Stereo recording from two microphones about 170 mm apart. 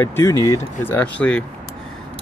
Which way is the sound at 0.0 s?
15° left (ahead or behind).